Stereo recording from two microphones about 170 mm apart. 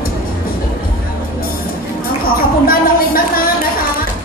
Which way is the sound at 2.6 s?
60° left (ahead or behind).